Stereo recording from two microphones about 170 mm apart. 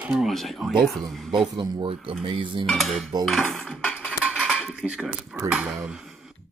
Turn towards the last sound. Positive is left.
turn(degrees=-5)  # may be behind; listen again after turning